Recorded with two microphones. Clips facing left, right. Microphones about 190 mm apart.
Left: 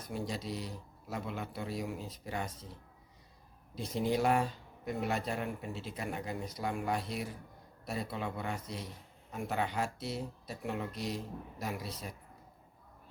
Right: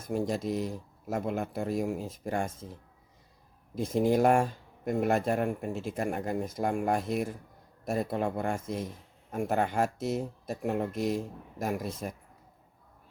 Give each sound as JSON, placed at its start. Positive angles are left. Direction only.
{"t": 0.0, "sound": "speech", "side_deg": -45}
{"t": 3.8, "sound": "speech", "side_deg": -50}